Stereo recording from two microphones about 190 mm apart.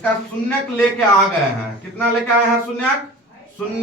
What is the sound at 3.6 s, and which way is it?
Speech, 5° left (ahead or behind).